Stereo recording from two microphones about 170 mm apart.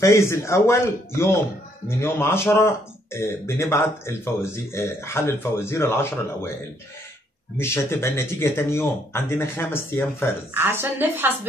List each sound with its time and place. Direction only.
0.0 s speech: 15° left (ahead or behind)
7.5 s speech: 15° left (ahead or behind)
10.5 s a woman's voice: 15° right (ahead or behind)